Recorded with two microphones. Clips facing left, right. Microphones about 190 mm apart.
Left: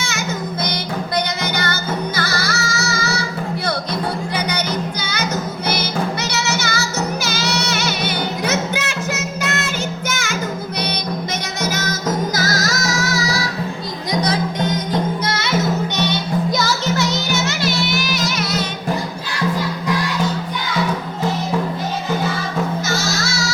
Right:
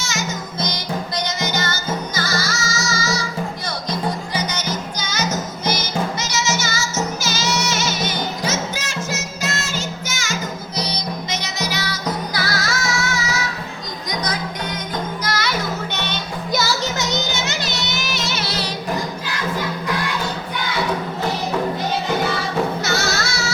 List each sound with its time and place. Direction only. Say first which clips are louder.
0.0 s music: left 2 dB; 60° left (ahead or behind)
4.4 s music: left 3 dB; 60° left (ahead or behind)
11.6 s music: left 4 dB; 45° left (ahead or behind); by 16.0 s 25° left (ahead or behind)
16.8 s music: left 3 dB; 20° right (ahead or behind)
22.9 s music: even; 65° right (ahead or behind)